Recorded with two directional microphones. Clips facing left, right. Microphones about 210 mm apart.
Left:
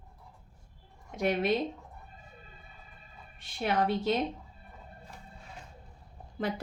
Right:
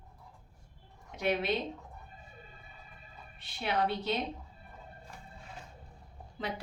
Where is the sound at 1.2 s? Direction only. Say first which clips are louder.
Left 3 dB; 45° left (ahead or behind).